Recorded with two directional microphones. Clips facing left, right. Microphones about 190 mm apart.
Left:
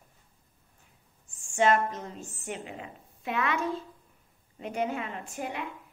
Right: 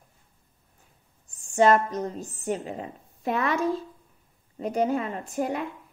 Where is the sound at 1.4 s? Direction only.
35° right (ahead or behind).